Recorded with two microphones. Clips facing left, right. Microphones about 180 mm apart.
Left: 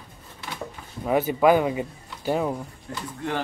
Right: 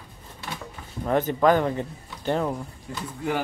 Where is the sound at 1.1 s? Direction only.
10° left (ahead or behind).